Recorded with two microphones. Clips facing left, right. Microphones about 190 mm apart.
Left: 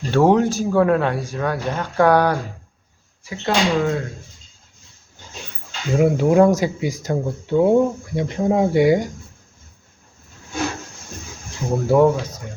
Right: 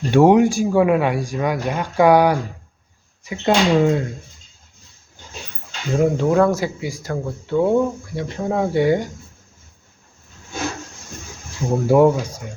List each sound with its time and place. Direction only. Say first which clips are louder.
0.1 s a man's voice: right 3 dB; 15° right (ahead or behind)
6.0 s speech: left 1 dB; 5° left (ahead or behind)
6.3 s speech: left 2 dB; 20° left (ahead or behind)
11.9 s a man's voice: right 1 dB; 10° right (ahead or behind)